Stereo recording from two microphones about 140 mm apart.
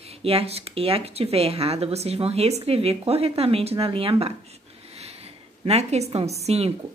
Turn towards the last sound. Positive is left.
turn(degrees=-50)  # may be behind; listen again after turning